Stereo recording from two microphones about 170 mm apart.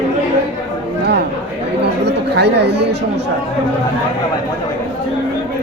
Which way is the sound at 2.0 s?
85° right.